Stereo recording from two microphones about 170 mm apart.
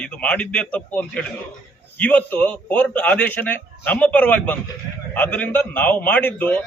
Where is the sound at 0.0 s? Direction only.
5° left (ahead or behind).